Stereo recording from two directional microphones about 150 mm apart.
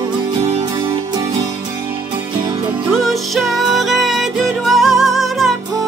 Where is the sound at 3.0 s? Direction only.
Centre (ahead or behind).